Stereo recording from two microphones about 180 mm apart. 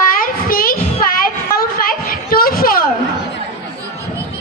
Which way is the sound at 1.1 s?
55° left (ahead or behind).